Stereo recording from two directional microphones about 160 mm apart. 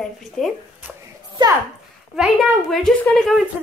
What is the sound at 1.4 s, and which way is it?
Speech, 30° right (ahead or behind).